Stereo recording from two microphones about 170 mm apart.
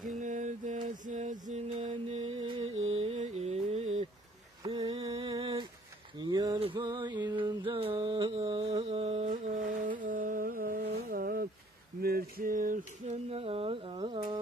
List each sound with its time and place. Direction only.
0.2 s mantra: 45° right (ahead or behind)
1.5 s music: 45° right (ahead or behind)
2.8 s mantra: 35° right (ahead or behind); by 11.4 s 60° right (ahead or behind)
12.0 s a sound: 65° right (ahead or behind); by 14.4 s 30° right (ahead or behind)